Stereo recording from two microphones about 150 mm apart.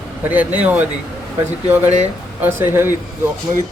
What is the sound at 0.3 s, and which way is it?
A man's voice, 10° right (ahead or behind).